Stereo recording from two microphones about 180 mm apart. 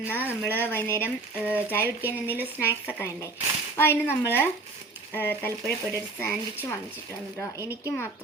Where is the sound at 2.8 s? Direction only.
10° left (ahead or behind).